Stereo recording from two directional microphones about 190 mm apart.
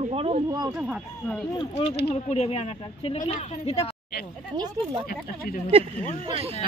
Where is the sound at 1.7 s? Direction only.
35° left (ahead or behind).